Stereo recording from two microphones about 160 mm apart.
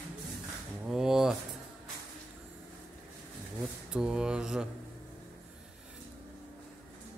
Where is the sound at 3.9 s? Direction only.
5° right (ahead or behind).